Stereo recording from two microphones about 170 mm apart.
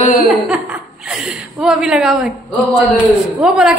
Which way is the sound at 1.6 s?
5° right (ahead or behind).